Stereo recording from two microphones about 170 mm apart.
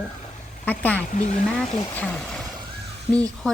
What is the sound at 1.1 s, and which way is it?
Speech, 45° left (ahead or behind).